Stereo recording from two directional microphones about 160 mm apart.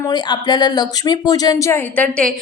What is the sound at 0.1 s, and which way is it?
A woman's voice, 25° left (ahead or behind).